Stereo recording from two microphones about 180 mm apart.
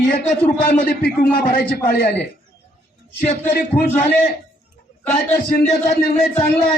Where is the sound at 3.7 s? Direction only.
35° left (ahead or behind).